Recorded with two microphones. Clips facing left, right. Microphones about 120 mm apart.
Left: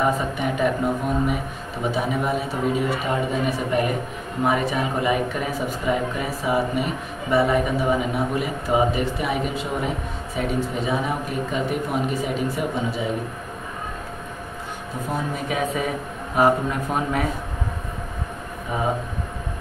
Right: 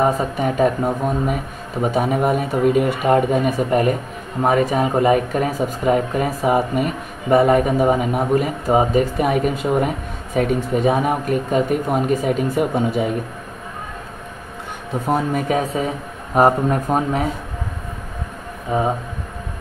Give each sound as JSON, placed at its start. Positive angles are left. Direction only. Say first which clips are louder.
{"t": 0.0, "sound": "speech", "louder": "right 4 dB", "side_deg": -40}
{"t": 15.3, "sound": "speech", "louder": "right 5 dB", "side_deg": -40}